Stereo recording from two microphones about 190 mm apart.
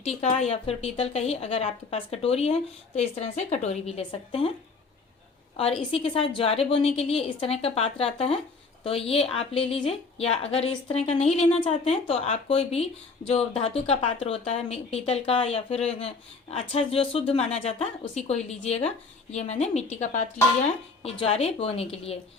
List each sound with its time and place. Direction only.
0.0 s speech: 35° left (ahead or behind)
5.5 s speech: 30° left (ahead or behind)